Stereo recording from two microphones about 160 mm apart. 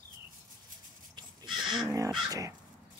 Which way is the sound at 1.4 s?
Centre (ahead or behind).